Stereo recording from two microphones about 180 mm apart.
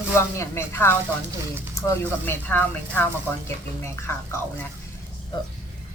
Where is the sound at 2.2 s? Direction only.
10° left (ahead or behind).